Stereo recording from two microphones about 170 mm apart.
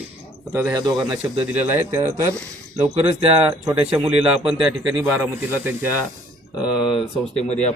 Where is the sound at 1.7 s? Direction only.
15° right (ahead or behind).